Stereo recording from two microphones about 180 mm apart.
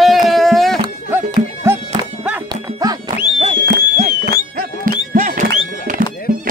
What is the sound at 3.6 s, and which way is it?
Music, 50° right (ahead or behind).